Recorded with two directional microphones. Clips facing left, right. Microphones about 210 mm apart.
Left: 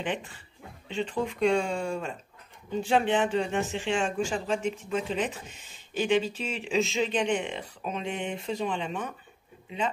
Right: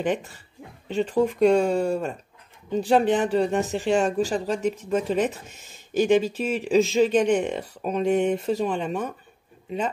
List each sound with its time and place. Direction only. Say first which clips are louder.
0.0 s speech: right 7 dB; 40° right (ahead or behind)